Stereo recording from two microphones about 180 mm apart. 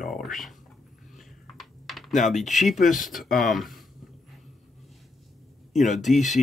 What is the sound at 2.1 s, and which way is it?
Speech, 45° left (ahead or behind).